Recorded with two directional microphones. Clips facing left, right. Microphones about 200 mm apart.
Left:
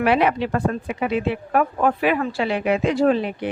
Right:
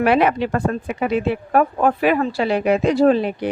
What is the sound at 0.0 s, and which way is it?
A woman's voice, 45° right (ahead or behind).